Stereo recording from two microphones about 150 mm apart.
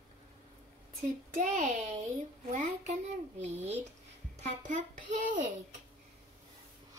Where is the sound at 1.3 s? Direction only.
55° right (ahead or behind).